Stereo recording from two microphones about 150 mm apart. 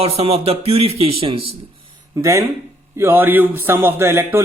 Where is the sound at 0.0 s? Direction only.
45° right (ahead or behind).